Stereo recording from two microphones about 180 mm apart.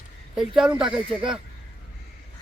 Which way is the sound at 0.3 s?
5° right (ahead or behind).